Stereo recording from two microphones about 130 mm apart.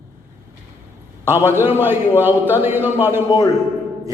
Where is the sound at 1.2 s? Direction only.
20° right (ahead or behind).